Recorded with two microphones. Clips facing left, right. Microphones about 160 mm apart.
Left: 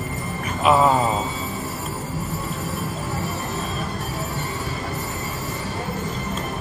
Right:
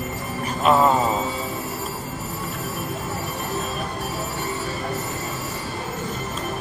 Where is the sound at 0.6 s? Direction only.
Centre (ahead or behind).